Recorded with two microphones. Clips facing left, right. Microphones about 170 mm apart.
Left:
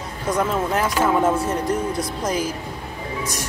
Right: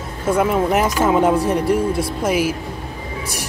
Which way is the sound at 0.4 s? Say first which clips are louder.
Right 4 dB; 10° right (ahead or behind).